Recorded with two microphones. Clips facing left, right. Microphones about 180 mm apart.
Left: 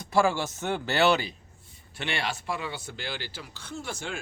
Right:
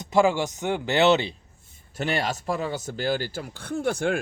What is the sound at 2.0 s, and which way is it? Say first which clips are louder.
Speech: right 6 dB; 40° right (ahead or behind).